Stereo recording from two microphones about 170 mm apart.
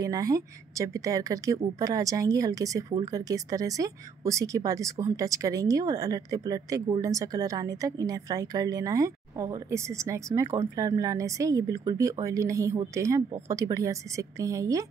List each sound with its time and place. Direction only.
0.0 s speech: 20° right (ahead or behind)